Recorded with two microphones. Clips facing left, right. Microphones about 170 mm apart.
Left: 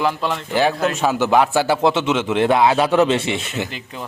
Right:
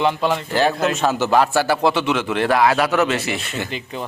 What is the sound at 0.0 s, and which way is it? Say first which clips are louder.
Speech: right 2 dB; centre (ahead or behind).